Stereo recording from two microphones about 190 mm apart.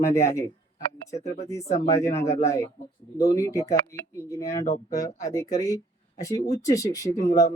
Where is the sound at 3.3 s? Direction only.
15° left (ahead or behind).